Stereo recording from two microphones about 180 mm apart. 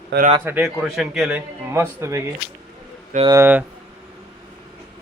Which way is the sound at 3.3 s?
15° right (ahead or behind).